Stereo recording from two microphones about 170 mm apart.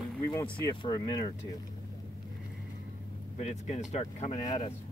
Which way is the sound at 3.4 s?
40° left (ahead or behind).